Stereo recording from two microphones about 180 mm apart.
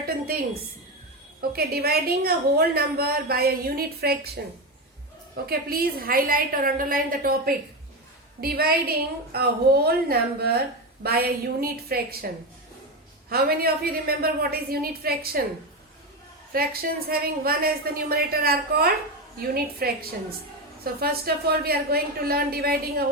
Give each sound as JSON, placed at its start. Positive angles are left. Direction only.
{"t": 1.4, "sound": "a woman's voice", "side_deg": -60}
{"t": 5.5, "sound": "a woman's voice", "side_deg": -55}
{"t": 13.3, "sound": "a woman's voice", "side_deg": -60}
{"t": 16.5, "sound": "a woman's voice", "side_deg": -55}